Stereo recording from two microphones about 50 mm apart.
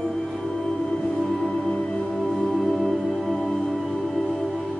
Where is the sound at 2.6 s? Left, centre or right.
Centre.